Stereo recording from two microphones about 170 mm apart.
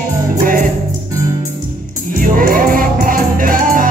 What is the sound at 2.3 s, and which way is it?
Music, 55° right (ahead or behind).